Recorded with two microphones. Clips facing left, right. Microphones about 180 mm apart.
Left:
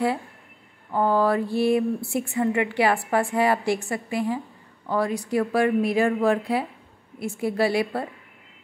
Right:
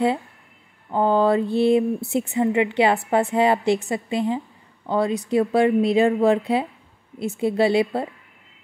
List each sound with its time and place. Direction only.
0.9 s a woman's voice: 25° right (ahead or behind)